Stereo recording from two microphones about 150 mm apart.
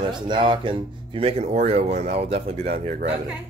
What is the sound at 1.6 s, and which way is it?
Speech, 45° right (ahead or behind).